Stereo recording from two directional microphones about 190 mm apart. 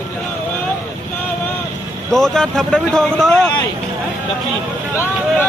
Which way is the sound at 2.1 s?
Centre (ahead or behind).